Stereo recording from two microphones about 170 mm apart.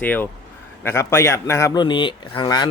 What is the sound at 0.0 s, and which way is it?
Speech, 10° left (ahead or behind).